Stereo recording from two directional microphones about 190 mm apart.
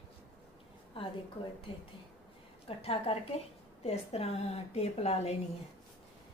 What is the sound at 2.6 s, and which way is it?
A woman's voice, 30° left (ahead or behind).